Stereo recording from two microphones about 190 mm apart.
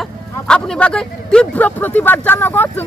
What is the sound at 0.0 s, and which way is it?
Speech, 5° left (ahead or behind).